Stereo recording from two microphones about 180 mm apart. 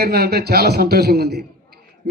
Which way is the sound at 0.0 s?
60° right (ahead or behind).